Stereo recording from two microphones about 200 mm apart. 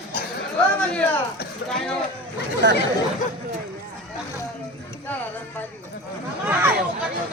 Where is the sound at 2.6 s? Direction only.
60° right (ahead or behind).